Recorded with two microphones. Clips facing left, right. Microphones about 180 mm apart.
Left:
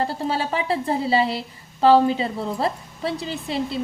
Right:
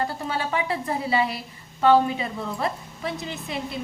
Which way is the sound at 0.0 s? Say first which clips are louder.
Left 3 dB; 30° left (ahead or behind).